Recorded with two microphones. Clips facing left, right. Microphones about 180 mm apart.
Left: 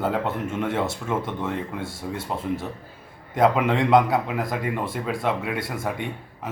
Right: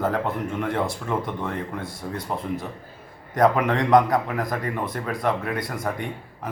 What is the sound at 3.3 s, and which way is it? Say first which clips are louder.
A man's voice: even; 5° left (ahead or behind).